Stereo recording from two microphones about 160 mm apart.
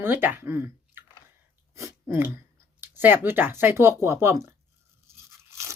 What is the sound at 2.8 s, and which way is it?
Speech, 10° right (ahead or behind).